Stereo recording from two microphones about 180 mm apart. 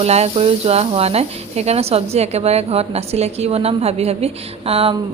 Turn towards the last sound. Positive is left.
turn(degrees=-30)  # may be behind; listen again after turning